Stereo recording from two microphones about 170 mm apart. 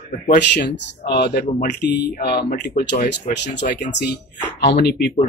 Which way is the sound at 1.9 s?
75° left (ahead or behind).